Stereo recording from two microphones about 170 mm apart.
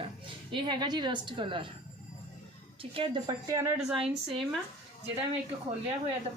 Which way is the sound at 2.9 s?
30° right (ahead or behind).